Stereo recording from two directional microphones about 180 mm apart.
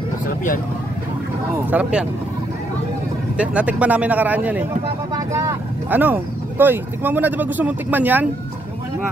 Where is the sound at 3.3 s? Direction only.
5° right (ahead or behind).